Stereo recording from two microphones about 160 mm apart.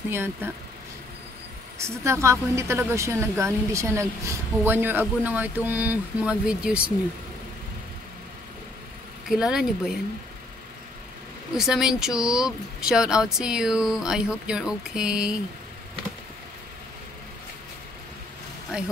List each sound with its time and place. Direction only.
0.1 s speech: 15° right (ahead or behind)
2.0 s speech: 20° right (ahead or behind)
9.3 s speech: 5° right (ahead or behind)
11.5 s speech: 5° right (ahead or behind)
18.7 s speech: 5° right (ahead or behind)